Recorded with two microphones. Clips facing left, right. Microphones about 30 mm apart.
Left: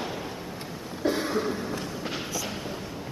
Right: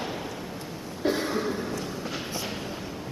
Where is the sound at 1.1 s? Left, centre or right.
Centre.